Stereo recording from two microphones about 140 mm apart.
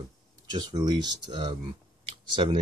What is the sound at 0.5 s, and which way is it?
Speech, 30° right (ahead or behind).